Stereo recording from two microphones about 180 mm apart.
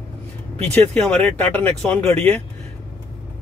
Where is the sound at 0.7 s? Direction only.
10° left (ahead or behind).